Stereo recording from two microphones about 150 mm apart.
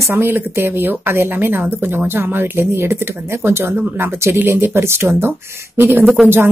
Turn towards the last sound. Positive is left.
turn(degrees=-15)  # may be behind; listen again after turning